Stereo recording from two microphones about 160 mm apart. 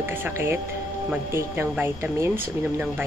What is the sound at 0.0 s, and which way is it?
Speech, 15° right (ahead or behind).